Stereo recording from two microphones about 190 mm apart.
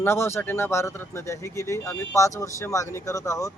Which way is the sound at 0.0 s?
15° left (ahead or behind).